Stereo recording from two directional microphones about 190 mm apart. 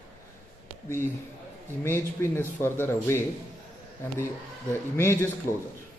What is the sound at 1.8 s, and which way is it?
Speech, 15° left (ahead or behind).